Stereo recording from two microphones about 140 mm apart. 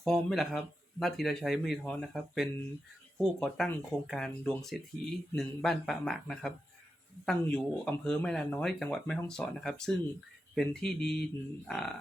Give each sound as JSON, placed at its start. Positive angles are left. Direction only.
{"t": 0.0, "sound": "speech", "side_deg": 0}